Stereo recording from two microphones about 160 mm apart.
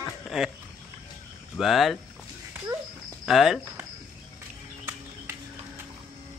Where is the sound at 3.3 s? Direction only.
Centre (ahead or behind).